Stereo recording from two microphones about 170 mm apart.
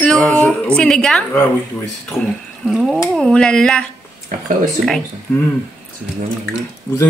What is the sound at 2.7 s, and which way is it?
Speech, centre (ahead or behind).